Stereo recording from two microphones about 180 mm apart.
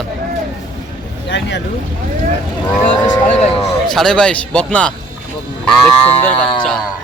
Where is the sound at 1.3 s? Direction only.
80° left.